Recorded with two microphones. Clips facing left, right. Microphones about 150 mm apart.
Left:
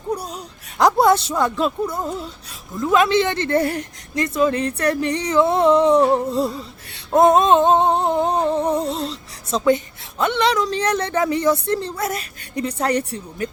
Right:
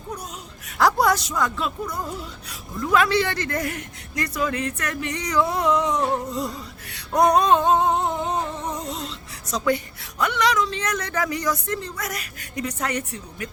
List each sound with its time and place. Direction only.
0.1 s speech: 35° left (ahead or behind)
0.8 s a woman's voice: 20° left (ahead or behind)
2.8 s a woman's voice: 20° left (ahead or behind)
6.9 s music: 25° left (ahead or behind)